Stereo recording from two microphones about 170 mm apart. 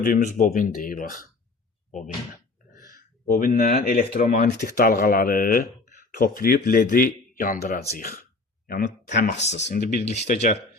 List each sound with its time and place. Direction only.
0.0 s speech: 55° left (ahead or behind)
4.2 s speech: 45° left (ahead or behind)